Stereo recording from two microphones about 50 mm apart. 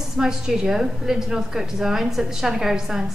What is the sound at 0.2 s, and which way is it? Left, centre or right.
A woman's voice, centre.